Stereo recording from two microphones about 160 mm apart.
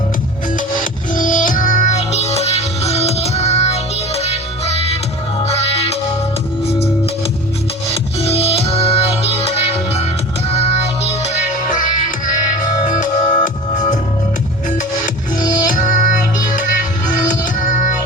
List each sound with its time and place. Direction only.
1.1 s music: 55° left (ahead or behind)
8.2 s music: 40° left (ahead or behind)
10.5 s child singing: 40° left (ahead or behind)
11.7 s music: 55° left (ahead or behind)
15.4 s music: 55° left (ahead or behind)